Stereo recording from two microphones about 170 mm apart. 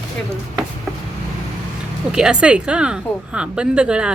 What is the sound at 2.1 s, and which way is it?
A woman's voice, 5° right (ahead or behind).